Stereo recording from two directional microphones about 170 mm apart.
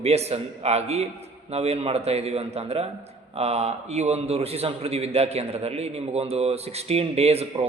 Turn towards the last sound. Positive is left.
turn(degrees=-35)  # may be behind; listen again after turning